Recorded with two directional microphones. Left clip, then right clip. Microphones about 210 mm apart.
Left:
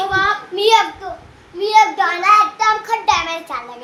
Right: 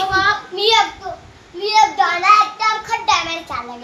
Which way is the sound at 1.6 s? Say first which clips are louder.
Left 1 dB; 40° left (ahead or behind).